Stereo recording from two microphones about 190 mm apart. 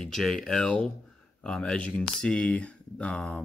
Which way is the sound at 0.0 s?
Centre (ahead or behind).